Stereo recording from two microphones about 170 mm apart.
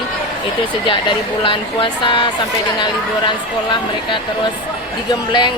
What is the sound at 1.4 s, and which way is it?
Speech, 30° left (ahead or behind).